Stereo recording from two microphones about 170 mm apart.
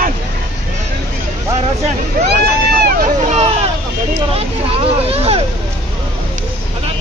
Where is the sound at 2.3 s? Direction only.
70° right (ahead or behind).